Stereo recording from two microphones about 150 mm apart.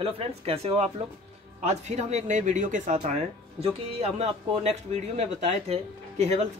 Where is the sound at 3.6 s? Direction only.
40° right (ahead or behind).